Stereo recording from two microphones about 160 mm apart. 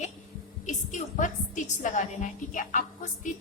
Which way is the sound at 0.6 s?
50° left (ahead or behind).